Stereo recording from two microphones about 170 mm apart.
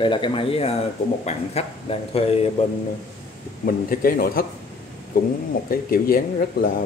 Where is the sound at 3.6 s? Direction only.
55° left (ahead or behind).